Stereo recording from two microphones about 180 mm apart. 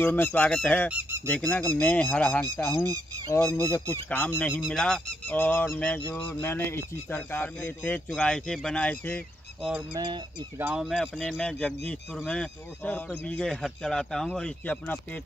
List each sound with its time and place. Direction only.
0.0 s honk: 10° left (ahead or behind)
9.9 s fowl: 25° right (ahead or behind)
10.6 s speech: 5° right (ahead or behind)